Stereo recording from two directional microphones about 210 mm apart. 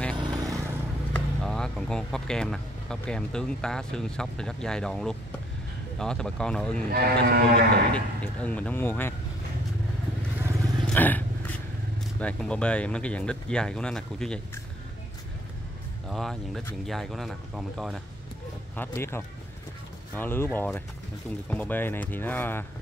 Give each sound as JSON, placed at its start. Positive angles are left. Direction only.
{"t": 0.2, "sound": "vehicle", "side_deg": -20}
{"t": 1.1, "sound": "speech", "side_deg": 5}
{"t": 6.9, "sound": "speech", "side_deg": -45}
{"t": 7.9, "sound": "speech", "side_deg": 5}
{"t": 10.9, "sound": "roaring cats", "side_deg": 10}
{"t": 12.2, "sound": "speech", "side_deg": 5}
{"t": 16.1, "sound": "speech", "side_deg": 0}
{"t": 18.8, "sound": "speech", "side_deg": 10}